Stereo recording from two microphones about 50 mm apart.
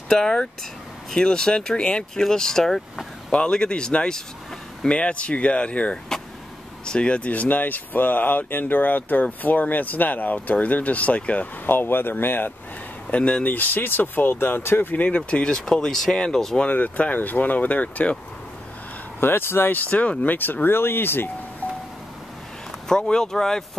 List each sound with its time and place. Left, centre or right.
0.1 s speech: centre
11.6 s speech: left
13.1 s speech: left
13.5 s speech: left
15.5 s speech: centre
16.7 s speech: left
19.1 s speech: left
19.9 s speech: left
20.6 s speech: left
22.8 s speech: centre